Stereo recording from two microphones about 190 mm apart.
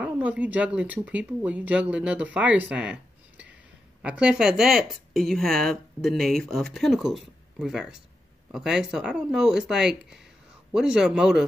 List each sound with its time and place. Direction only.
0.0 s speech: 5° right (ahead or behind)